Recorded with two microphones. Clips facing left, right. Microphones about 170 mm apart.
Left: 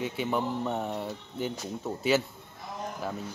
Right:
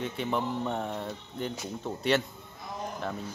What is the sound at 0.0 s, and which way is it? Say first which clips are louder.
Speech: left 1 dB; 5° left (ahead or behind).